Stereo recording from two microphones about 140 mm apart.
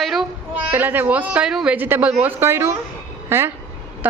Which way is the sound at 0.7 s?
15° right (ahead or behind).